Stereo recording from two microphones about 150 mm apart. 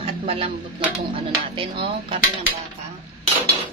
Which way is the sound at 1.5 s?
35° right (ahead or behind).